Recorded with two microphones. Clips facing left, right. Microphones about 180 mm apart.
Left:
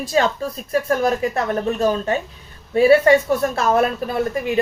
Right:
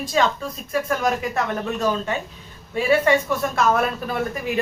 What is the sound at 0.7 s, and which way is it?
Speech, 35° left (ahead or behind).